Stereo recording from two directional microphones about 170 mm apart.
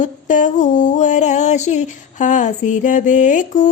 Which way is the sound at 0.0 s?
50° left (ahead or behind).